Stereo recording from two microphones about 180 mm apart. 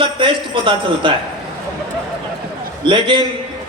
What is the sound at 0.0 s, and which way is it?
A man's voice, 30° right (ahead or behind).